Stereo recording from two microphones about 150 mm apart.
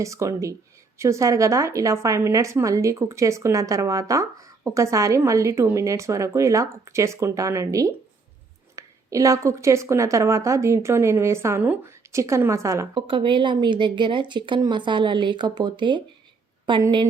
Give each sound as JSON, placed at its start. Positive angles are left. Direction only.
{"t": 0.0, "sound": "a woman's voice", "side_deg": -20}
{"t": 12.9, "sound": "speech", "side_deg": -35}